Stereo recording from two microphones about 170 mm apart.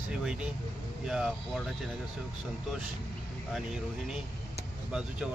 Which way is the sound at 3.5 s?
5° right (ahead or behind).